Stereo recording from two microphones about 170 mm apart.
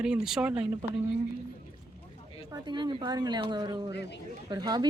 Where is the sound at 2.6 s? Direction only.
25° right (ahead or behind).